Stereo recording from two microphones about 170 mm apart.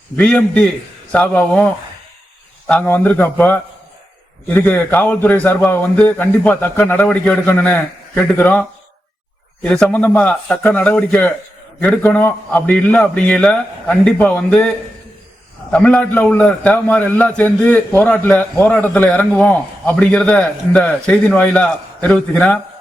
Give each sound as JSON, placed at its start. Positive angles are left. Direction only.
{"t": 0.2, "sound": "a man's voice", "side_deg": 5}
{"t": 9.6, "sound": "a man's voice", "side_deg": 5}
{"t": 15.7, "sound": "a man's voice", "side_deg": 5}